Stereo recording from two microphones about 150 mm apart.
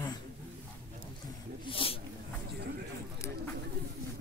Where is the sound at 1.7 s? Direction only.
35° left (ahead or behind).